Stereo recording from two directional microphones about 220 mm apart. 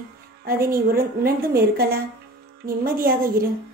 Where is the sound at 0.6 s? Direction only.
40° right (ahead or behind).